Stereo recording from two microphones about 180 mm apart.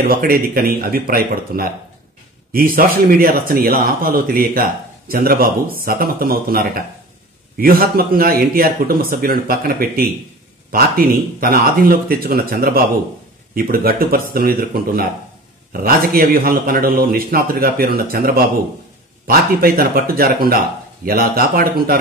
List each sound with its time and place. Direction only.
0.1 s a man's voice: 55° right (ahead or behind)